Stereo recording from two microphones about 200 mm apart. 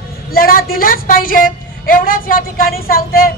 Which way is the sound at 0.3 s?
50° left (ahead or behind).